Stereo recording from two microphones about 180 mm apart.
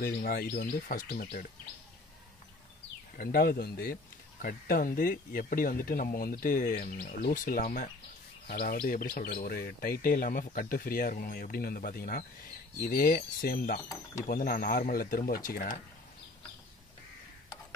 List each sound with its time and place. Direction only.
0.0 s speech: 55° left (ahead or behind)
3.2 s speech: 55° left (ahead or behind)